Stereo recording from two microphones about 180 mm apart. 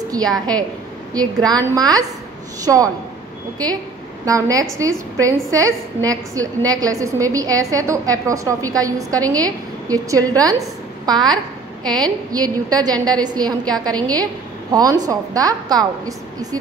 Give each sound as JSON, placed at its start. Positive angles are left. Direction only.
{"t": 0.1, "sound": "a woman's voice", "side_deg": -20}
{"t": 4.3, "sound": "a woman's voice", "side_deg": -20}